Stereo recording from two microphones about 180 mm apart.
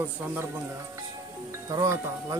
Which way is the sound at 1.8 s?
20° right (ahead or behind).